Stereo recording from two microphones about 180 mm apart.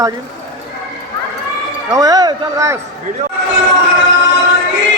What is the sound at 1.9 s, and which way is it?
Speech, 20° right (ahead or behind).